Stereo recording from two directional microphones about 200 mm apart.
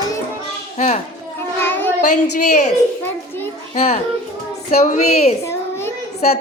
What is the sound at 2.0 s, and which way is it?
Speech, 35° left (ahead or behind).